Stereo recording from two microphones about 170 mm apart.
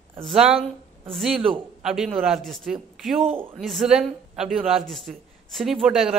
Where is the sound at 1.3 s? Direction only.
30° right (ahead or behind).